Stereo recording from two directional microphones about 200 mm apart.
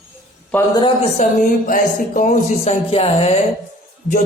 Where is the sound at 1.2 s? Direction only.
40° left (ahead or behind).